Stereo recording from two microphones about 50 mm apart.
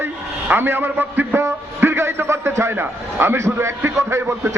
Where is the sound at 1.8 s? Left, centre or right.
Right.